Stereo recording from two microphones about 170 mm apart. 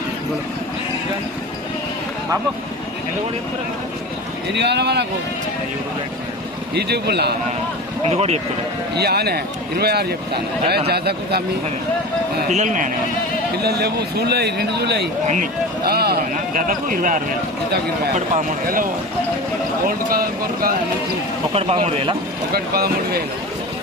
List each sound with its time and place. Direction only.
4.5 s speech: 85° right
6.7 s a man's voice: 75° right (ahead or behind)
8.0 s speech: 40° right (ahead or behind)
9.0 s a man's voice: 70° right (ahead or behind)
12.5 s speech: 45° right (ahead or behind)
13.6 s a man's voice: 70° right (ahead or behind)
16.3 s speech: 50° right (ahead or behind)
20.1 s speech: 60° right (ahead or behind)
21.5 s speech: 35° right (ahead or behind)
22.5 s speech: 65° right (ahead or behind)